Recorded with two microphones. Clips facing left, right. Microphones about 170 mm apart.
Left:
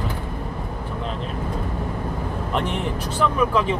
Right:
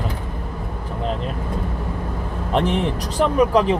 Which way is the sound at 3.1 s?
40° right (ahead or behind).